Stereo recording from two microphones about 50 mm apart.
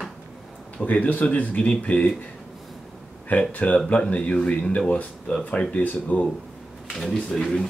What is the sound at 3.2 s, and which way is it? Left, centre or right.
Speech, left.